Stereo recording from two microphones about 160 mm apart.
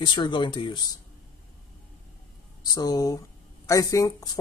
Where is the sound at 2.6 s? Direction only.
25° left (ahead or behind).